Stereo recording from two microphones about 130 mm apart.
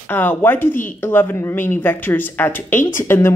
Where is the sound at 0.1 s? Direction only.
15° left (ahead or behind).